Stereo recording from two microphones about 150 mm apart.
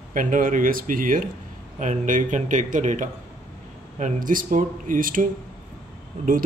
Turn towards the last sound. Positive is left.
turn(degrees=-55)  # may be behind; listen again after turning